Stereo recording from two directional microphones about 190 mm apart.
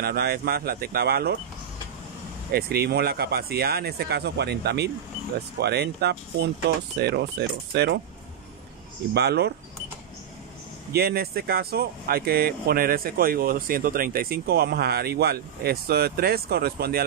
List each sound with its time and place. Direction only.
0.0 s speech: 55° right (ahead or behind)
2.5 s speech: 55° right (ahead or behind)
9.1 s speech: 60° right (ahead or behind)
10.9 s speech: 55° right (ahead or behind)